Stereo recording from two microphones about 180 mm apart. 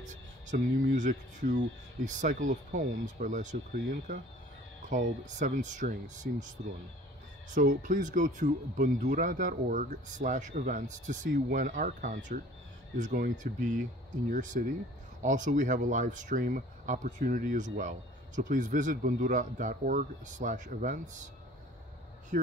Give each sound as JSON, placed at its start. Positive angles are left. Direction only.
{"t": 0.0, "sound": "a sound", "side_deg": -45}
{"t": 1.4, "sound": "speech", "side_deg": -85}
{"t": 2.0, "sound": "speech", "side_deg": -45}
{"t": 4.8, "sound": "speech", "side_deg": -45}
{"t": 7.5, "sound": "speech", "side_deg": -45}